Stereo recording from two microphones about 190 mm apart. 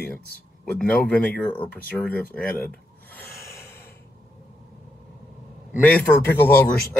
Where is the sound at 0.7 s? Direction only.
5° left (ahead or behind).